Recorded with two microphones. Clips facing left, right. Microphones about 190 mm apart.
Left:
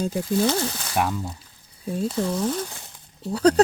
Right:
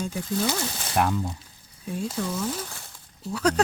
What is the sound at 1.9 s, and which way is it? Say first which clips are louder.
Speech: left 4 dB; 35° left (ahead or behind).